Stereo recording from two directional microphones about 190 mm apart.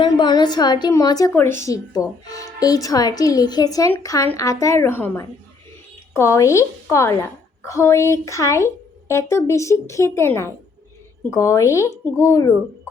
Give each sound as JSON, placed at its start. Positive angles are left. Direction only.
{"t": 0.0, "sound": "a woman's voice", "side_deg": 25}